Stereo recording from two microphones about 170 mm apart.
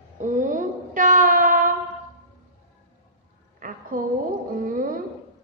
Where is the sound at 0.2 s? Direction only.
50° right (ahead or behind).